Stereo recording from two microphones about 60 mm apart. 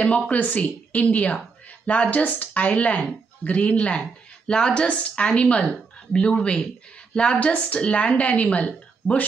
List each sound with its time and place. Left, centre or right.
0.3 s a woman's voice: left